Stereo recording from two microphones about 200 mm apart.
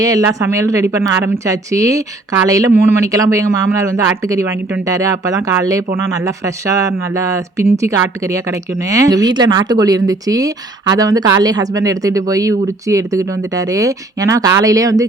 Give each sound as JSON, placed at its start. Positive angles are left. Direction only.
{"t": 0.0, "sound": "speech", "side_deg": -15}